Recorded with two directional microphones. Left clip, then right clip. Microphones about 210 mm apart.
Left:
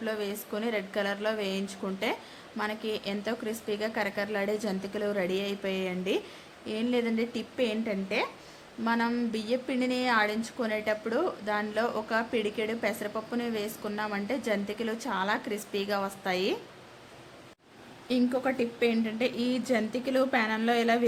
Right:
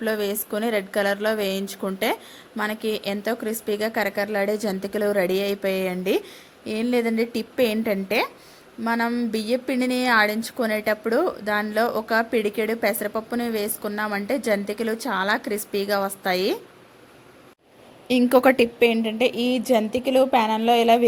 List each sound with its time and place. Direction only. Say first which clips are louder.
0.0 s a woman's voice: right 8 dB; 30° right (ahead or behind)
8.8 s a woman's voice: right 5 dB; 20° right (ahead or behind)
18.3 s a woman's voice: right 13 dB; 45° right (ahead or behind)
18.9 s a woman's voice: right 8 dB; 25° right (ahead or behind)